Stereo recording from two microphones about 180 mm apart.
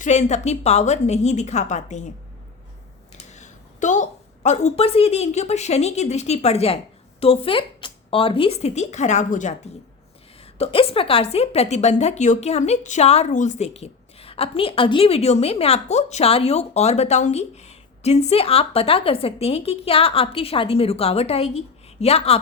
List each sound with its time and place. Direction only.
0.0 s a woman's voice: 40° left (ahead or behind)
3.1 s a sound: 40° left (ahead or behind)
4.4 s a woman's voice: 40° left (ahead or behind)
10.4 s a woman's voice: 30° left (ahead or behind)